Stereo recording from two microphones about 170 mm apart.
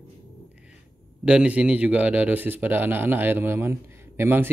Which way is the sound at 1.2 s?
5° right (ahead or behind).